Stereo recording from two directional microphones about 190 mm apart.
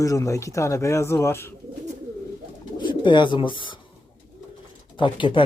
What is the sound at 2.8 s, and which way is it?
Speech, 25° left (ahead or behind).